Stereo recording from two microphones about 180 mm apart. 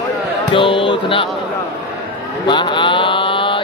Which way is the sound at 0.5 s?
30° left (ahead or behind).